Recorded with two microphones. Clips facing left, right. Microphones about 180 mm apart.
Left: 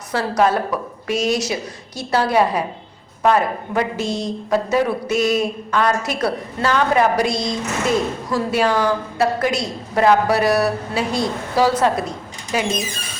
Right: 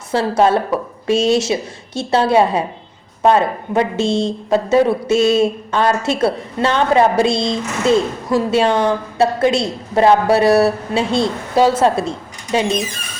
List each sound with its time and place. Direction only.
0.1 s speech: 25° right (ahead or behind)